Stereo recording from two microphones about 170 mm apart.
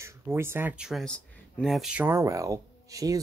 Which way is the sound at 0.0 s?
15° right (ahead or behind).